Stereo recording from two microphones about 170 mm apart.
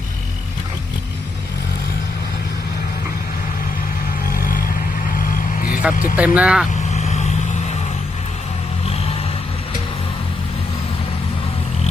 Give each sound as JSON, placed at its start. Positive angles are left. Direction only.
{"t": 4.4, "sound": "vehicle", "side_deg": 55}
{"t": 6.1, "sound": "speech", "side_deg": -5}
{"t": 6.9, "sound": "vehicle", "side_deg": 40}